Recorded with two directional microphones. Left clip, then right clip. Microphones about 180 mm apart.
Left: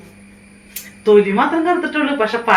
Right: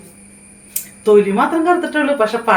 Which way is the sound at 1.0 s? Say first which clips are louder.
Even; 20° right (ahead or behind).